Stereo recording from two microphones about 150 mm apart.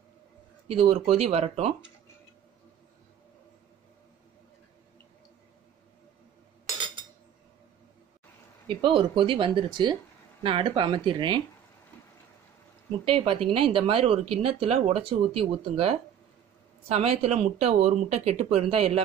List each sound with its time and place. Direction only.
0.7 s speech: 40° right (ahead or behind)
6.6 s a sound: 30° right (ahead or behind)
8.6 s speech: 35° right (ahead or behind)
13.0 s speech: 40° right (ahead or behind)